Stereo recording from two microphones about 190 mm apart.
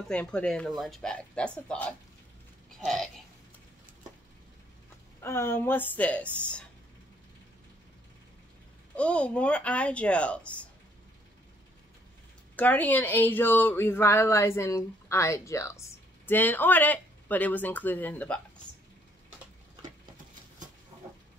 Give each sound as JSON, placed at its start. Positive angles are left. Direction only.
{"t": 0.1, "sound": "speech", "side_deg": 5}
{"t": 5.2, "sound": "a woman's voice", "side_deg": 15}
{"t": 8.9, "sound": "a woman's voice", "side_deg": 5}
{"t": 12.5, "sound": "a woman's voice", "side_deg": 10}